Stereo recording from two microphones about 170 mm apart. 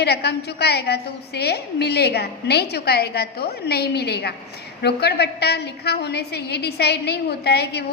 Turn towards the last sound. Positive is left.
turn(degrees=75)  # may be behind; listen again after turning